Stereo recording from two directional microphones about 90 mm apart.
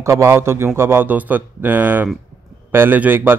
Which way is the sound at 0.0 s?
35° right (ahead or behind).